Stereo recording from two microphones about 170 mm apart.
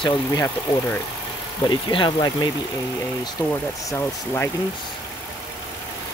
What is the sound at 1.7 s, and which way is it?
Speech, 30° left (ahead or behind).